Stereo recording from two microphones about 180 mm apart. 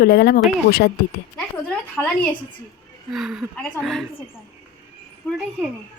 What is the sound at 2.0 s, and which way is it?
A woman's voice, 5° left (ahead or behind).